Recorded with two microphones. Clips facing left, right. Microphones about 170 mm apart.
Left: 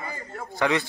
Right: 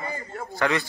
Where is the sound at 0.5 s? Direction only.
20° left (ahead or behind).